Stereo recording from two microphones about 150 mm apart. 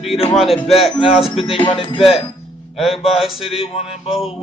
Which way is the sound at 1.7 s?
35° left (ahead or behind).